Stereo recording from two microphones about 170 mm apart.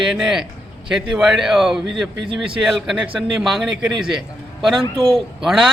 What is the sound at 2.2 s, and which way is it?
Speech, 30° right (ahead or behind).